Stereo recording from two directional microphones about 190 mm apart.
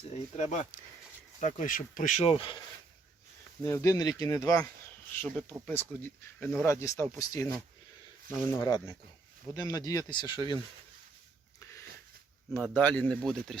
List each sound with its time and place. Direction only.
0.3 s speech: 35° left (ahead or behind)
3.6 s speech: 15° left (ahead or behind)
5.2 s speech: 5° left (ahead or behind); by 10.6 s 25° left (ahead or behind)
12.6 s speech: 5° left (ahead or behind)